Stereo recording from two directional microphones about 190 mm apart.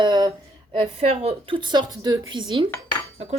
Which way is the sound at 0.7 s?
30° right (ahead or behind).